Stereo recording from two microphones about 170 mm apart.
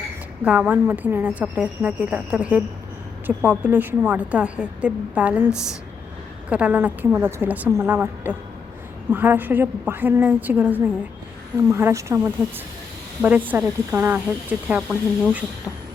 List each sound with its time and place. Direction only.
0.4 s a woman's voice: 5° right (ahead or behind)
13.5 s a woman's voice: 10° right (ahead or behind)